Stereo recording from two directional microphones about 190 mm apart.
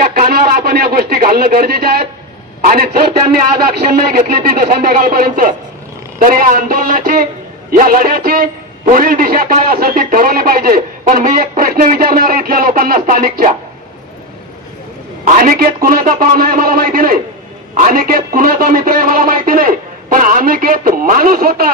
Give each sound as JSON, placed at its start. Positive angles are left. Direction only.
{"t": 0.0, "sound": "a man's voice", "side_deg": -50}
{"t": 15.2, "sound": "a man's voice", "side_deg": -45}